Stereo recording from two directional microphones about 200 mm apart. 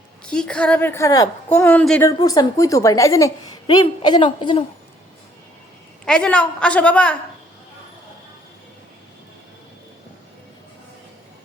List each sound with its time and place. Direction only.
0.3 s a woman's voice: 5° left (ahead or behind)
2.0 s a woman's voice: 20° left (ahead or behind)
6.1 s a woman's voice: 5° left (ahead or behind)